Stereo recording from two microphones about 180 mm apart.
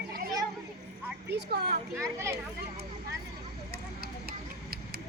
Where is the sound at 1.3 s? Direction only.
65° right (ahead or behind).